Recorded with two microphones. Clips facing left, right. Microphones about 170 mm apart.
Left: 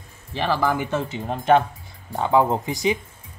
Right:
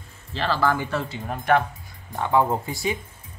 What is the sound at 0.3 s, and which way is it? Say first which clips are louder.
Speech: left 1 dB; 15° left (ahead or behind).